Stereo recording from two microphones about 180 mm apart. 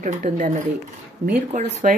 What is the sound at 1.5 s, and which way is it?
Speech, 40° right (ahead or behind).